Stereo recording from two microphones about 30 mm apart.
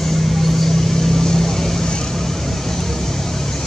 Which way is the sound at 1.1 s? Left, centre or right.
Centre.